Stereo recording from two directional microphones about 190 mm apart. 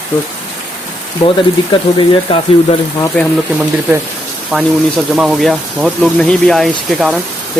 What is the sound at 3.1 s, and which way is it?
Speech, 5° left (ahead or behind).